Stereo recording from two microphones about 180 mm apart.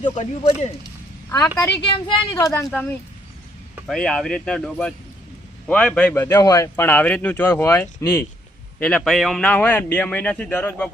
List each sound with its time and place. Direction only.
0.0 s speech: 35° left (ahead or behind)
1.5 s speech: 20° left (ahead or behind)
6.2 s speech: 20° left (ahead or behind)